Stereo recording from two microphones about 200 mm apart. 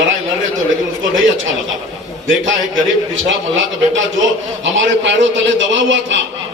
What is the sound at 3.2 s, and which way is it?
A man's voice, 70° right (ahead or behind).